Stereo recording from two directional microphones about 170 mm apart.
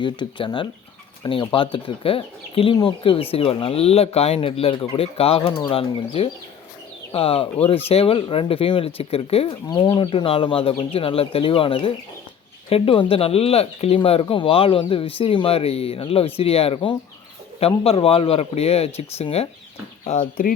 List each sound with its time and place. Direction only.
0.0 s speech: 30° left (ahead or behind)